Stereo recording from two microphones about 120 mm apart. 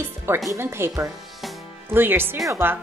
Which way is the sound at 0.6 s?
20° right (ahead or behind).